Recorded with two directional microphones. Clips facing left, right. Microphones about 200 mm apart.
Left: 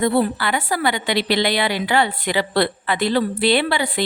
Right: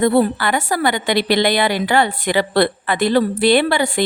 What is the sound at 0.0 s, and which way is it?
A woman's voice, 50° right (ahead or behind).